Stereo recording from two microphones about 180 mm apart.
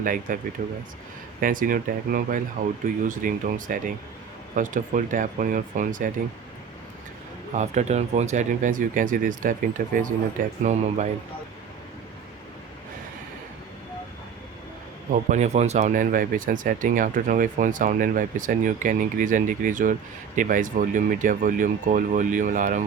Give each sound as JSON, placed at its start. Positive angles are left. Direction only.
{"t": 0.0, "sound": "speech", "side_deg": -50}
{"t": 7.5, "sound": "speech", "side_deg": -40}
{"t": 15.1, "sound": "speech", "side_deg": -40}